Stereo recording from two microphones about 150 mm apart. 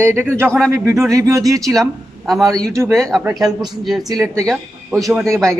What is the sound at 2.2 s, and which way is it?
A man's voice, centre (ahead or behind).